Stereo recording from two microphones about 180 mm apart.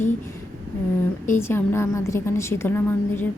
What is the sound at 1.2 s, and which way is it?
A woman's voice, 15° left (ahead or behind).